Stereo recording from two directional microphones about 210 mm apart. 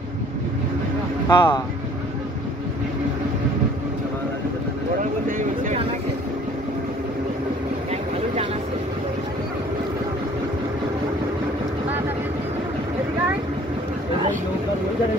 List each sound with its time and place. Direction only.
1.3 s speech: 20° left (ahead or behind)
5.4 s vehicle: 35° right (ahead or behind)